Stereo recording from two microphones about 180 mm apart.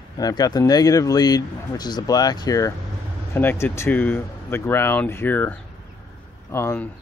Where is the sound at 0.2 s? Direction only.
20° left (ahead or behind).